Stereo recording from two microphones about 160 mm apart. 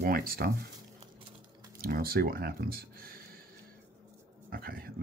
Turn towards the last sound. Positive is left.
turn(degrees=-70)  # may be behind; listen again after turning